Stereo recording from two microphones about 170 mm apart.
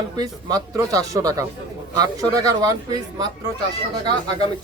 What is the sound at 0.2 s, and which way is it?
Speech, 20° right (ahead or behind).